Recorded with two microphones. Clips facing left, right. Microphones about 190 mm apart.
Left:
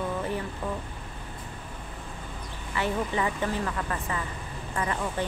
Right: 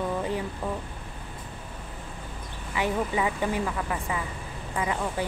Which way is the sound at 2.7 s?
10° right (ahead or behind).